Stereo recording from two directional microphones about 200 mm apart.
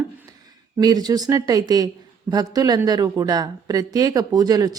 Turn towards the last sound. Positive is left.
turn(degrees=-20)  # may be behind; listen again after turning